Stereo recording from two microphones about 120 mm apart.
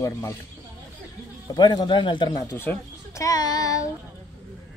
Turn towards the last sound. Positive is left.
turn(degrees=30)  # may be behind; listen again after turning